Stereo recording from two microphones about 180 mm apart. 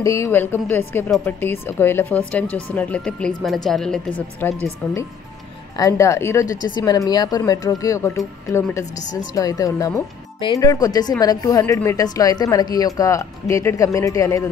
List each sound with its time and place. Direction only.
0.0 s a woman's voice: 15° left (ahead or behind)